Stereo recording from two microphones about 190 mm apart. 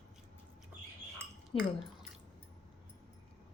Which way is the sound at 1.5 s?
25° left (ahead or behind).